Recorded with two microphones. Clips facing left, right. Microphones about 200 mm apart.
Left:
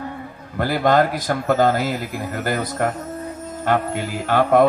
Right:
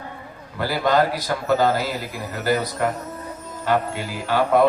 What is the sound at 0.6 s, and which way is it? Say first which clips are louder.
A man's voice: left 2 dB; 50° left (ahead or behind).